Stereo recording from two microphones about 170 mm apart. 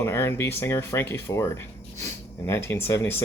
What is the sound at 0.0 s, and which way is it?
Speech, 15° left (ahead or behind).